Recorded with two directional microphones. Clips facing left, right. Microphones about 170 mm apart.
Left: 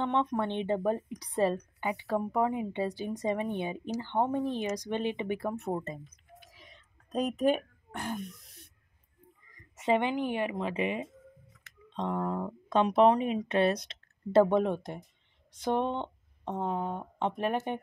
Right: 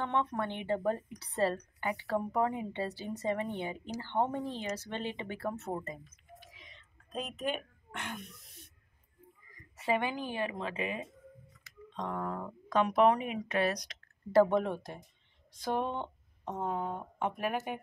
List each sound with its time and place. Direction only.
0.0 s speech: 20° left (ahead or behind)
6.5 s whispering: 40° left (ahead or behind)
9.8 s speech: 20° left (ahead or behind)